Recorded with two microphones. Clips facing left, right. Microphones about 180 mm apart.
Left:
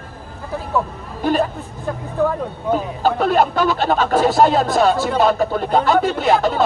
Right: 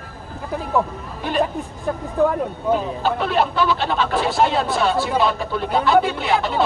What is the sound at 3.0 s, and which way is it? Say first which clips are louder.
Speech: left 4 dB; 45° left (ahead or behind).